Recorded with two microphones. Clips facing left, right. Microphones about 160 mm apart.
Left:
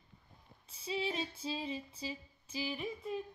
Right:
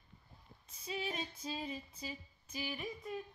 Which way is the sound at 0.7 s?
30° left (ahead or behind).